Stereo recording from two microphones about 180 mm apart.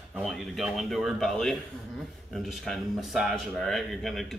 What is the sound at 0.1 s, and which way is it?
Speech, centre (ahead or behind).